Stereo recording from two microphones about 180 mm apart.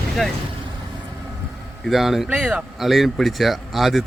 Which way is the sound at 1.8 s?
Centre (ahead or behind).